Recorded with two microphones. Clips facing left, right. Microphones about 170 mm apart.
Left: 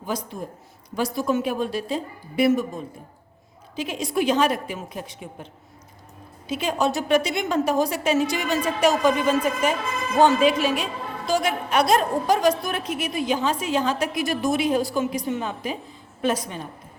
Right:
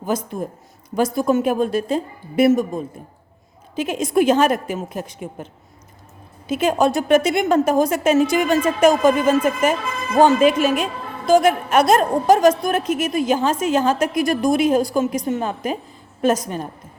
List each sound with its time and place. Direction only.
0.0 s a woman's voice: 50° right (ahead or behind)
6.5 s a woman's voice: 50° right (ahead or behind)